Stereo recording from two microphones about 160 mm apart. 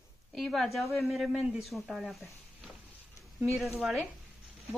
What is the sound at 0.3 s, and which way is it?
A woman's voice, centre (ahead or behind).